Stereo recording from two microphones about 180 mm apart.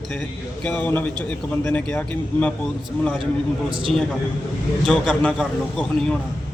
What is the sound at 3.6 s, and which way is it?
Speech, 30° right (ahead or behind).